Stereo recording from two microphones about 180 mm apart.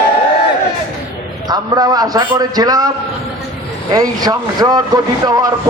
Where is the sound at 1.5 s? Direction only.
20° right (ahead or behind).